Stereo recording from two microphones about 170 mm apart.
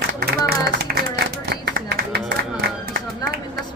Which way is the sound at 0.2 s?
65° right (ahead or behind).